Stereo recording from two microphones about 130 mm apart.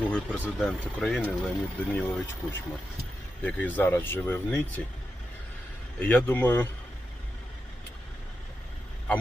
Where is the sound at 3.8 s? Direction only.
15° left (ahead or behind).